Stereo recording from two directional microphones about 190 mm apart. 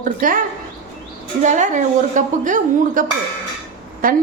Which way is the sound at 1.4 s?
40° right (ahead or behind).